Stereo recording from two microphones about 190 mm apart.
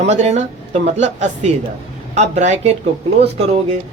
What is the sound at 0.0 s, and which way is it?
Speech, 35° right (ahead or behind).